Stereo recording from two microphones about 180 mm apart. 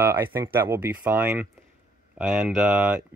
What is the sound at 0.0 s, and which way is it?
Speech, 10° right (ahead or behind).